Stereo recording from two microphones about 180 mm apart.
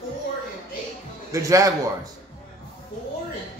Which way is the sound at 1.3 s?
15° right (ahead or behind).